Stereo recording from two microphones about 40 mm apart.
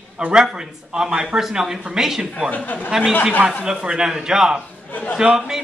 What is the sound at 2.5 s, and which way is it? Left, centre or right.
Speech, left.